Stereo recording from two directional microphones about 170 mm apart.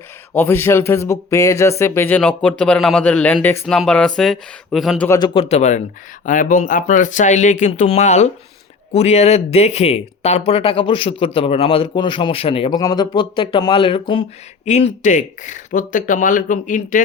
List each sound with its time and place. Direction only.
0.3 s speech: 15° left (ahead or behind)
5.0 s speech: 20° left (ahead or behind)
5.3 s speech: 35° left (ahead or behind)
14.6 s speech: 40° left (ahead or behind)